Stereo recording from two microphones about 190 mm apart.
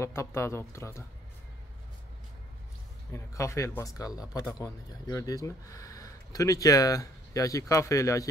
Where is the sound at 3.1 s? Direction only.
15° left (ahead or behind).